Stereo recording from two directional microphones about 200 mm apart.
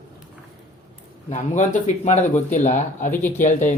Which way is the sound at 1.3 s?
40° left (ahead or behind).